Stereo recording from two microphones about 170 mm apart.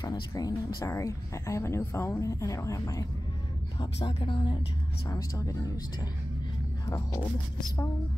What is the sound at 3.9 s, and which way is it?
Speech, 35° left (ahead or behind).